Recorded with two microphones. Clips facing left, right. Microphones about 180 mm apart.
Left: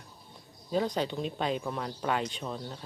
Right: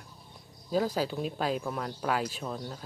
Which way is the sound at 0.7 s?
5° right (ahead or behind).